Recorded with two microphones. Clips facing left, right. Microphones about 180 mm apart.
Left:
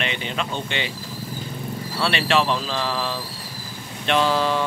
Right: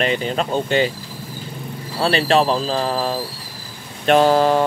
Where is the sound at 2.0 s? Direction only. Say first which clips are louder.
Right 5 dB; 35° right (ahead or behind).